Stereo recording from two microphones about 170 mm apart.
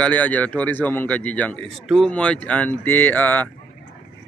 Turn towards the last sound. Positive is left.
turn(degrees=10)  # may be behind; listen again after turning